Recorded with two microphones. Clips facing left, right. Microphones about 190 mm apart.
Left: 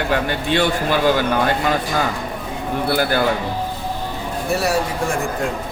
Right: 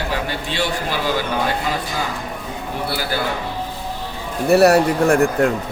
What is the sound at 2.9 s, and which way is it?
Speech, 55° left (ahead or behind).